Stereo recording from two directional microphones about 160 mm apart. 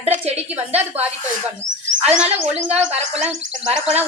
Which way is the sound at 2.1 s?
40° right (ahead or behind).